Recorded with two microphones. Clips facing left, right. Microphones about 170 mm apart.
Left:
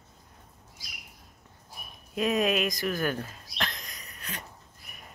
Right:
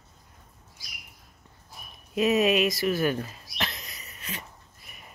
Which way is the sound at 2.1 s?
5° right (ahead or behind).